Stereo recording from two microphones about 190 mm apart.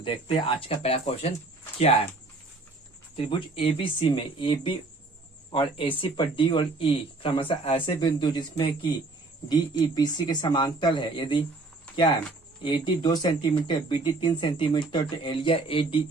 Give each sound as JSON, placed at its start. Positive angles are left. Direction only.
{"t": 0.0, "sound": "speech", "side_deg": 25}
{"t": 3.2, "sound": "speech", "side_deg": 30}